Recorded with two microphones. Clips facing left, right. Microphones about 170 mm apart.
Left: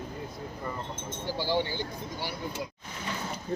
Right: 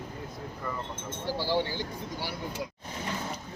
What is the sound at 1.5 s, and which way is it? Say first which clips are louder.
Speech: even; centre (ahead or behind).